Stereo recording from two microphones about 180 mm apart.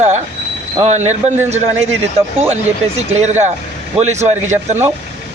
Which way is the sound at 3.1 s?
40° right (ahead or behind).